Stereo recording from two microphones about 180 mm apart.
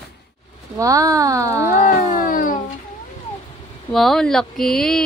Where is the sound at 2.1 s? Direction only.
50° left (ahead or behind).